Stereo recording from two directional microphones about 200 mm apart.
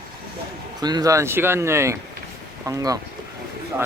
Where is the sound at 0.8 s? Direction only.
20° right (ahead or behind).